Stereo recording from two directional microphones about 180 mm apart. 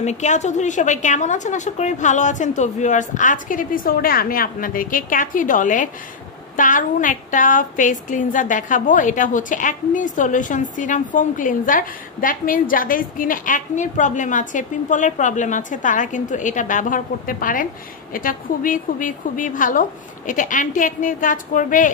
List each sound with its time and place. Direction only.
0.0 s a woman's voice: 40° left (ahead or behind)